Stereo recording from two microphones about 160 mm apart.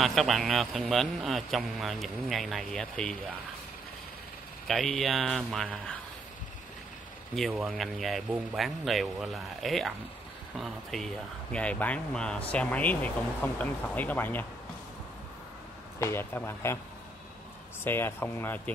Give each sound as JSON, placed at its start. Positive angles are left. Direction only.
{"t": 0.0, "sound": "a man's voice", "side_deg": 0}
{"t": 4.6, "sound": "a man's voice", "side_deg": 0}
{"t": 7.3, "sound": "a man's voice", "side_deg": 0}
{"t": 16.0, "sound": "speech", "side_deg": 15}
{"t": 17.8, "sound": "speech", "side_deg": 15}